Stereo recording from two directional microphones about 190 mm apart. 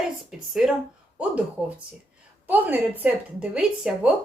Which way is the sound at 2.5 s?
10° right (ahead or behind).